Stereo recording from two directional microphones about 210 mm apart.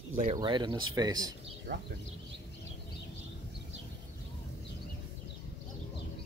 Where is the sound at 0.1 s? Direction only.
40° right (ahead or behind).